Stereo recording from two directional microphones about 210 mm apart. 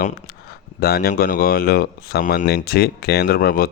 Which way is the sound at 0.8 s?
45° left (ahead or behind).